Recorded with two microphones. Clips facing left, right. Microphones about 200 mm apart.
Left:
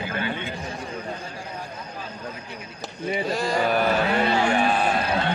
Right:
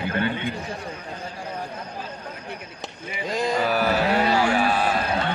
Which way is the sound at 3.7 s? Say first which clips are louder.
Even; 5° right (ahead or behind).